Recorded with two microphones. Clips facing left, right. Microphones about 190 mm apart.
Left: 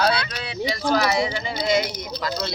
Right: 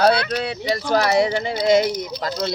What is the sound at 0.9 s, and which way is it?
Speech, 50° right (ahead or behind).